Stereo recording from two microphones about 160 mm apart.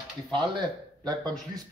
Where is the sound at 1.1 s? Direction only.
25° right (ahead or behind).